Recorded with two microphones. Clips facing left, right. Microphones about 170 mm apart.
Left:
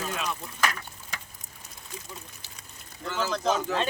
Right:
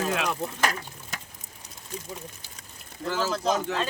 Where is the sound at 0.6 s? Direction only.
40° right (ahead or behind).